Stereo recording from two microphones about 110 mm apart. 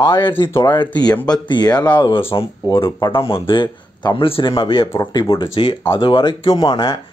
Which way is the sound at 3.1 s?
55° left (ahead or behind).